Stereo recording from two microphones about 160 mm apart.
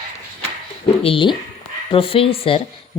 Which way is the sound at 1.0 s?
30° left (ahead or behind).